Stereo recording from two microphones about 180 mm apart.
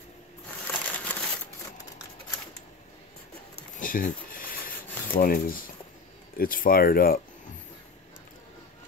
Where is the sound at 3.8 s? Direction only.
50° left (ahead or behind).